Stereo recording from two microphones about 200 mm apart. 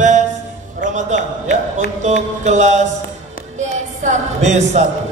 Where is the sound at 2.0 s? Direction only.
35° right (ahead or behind).